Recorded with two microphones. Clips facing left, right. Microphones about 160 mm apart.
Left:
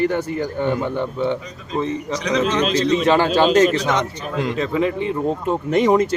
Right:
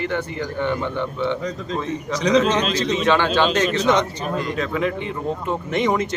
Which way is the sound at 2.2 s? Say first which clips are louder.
Right 3 dB; 35° right (ahead or behind).